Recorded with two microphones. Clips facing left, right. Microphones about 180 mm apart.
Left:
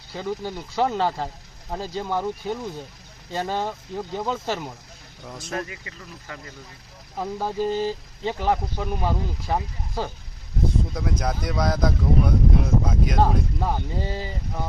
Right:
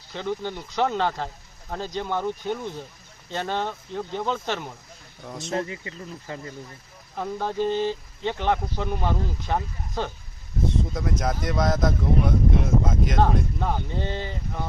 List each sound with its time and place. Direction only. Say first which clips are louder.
0.1 s speech: even; 10° left (ahead or behind)
5.4 s speech: right 3 dB; 25° right (ahead or behind)
7.2 s speech: even; 10° left (ahead or behind)
10.9 s speech: even; centre (ahead or behind)